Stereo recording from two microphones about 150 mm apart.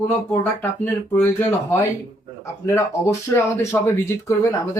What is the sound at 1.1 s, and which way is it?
Speech, 15° left (ahead or behind).